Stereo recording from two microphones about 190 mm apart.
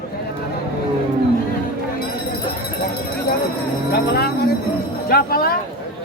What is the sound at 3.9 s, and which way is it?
Speech, 55° left (ahead or behind).